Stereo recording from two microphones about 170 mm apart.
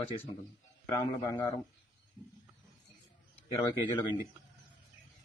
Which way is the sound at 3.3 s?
15° left (ahead or behind).